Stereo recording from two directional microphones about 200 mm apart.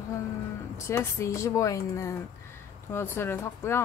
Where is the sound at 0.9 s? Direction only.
15° left (ahead or behind).